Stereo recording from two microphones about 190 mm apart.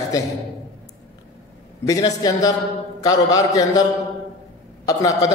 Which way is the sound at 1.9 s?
20° left (ahead or behind).